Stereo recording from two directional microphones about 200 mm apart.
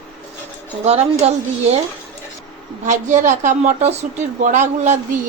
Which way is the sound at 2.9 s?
35° right (ahead or behind).